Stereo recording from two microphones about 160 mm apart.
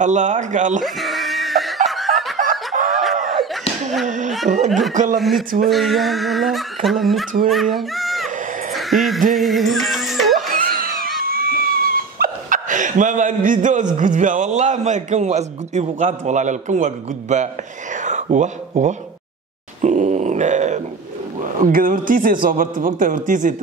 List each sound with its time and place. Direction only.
0.0 s a man's voice: 50° right (ahead or behind)
0.8 s screaming: centre (ahead or behind)
1.9 s snicker: centre (ahead or behind)
2.3 s snicker: 55° right (ahead or behind)
4.0 s a man's voice: 50° right (ahead or behind)
4.6 s speech: centre (ahead or behind)
4.9 s a man's voice: 50° right (ahead or behind)
5.7 s speech: centre (ahead or behind)
8.7 s a sound: centre (ahead or behind)
9.3 s music: centre (ahead or behind)
10.4 s a sound: 60° right (ahead or behind)
11.2 s dog: 65° right (ahead or behind)
13.9 s a man's voice: 55° right (ahead or behind)